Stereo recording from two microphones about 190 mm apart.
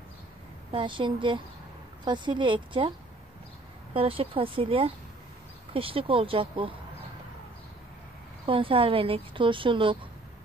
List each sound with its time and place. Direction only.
0.7 s a woman's voice: 25° right (ahead or behind)
3.9 s a woman's voice: 30° right (ahead or behind)
8.5 s a woman's voice: 30° right (ahead or behind)